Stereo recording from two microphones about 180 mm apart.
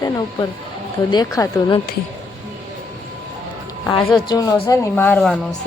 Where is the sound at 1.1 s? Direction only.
20° left (ahead or behind).